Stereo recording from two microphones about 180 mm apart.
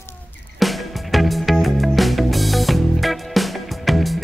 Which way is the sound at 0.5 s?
Centre (ahead or behind).